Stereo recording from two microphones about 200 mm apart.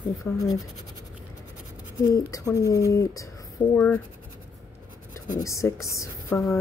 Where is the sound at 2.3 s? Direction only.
15° left (ahead or behind).